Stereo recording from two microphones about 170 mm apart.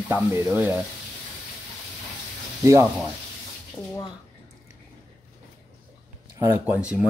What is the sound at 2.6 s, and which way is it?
Speech, 15° right (ahead or behind).